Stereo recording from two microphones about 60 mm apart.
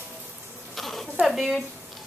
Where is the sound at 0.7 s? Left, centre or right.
Centre.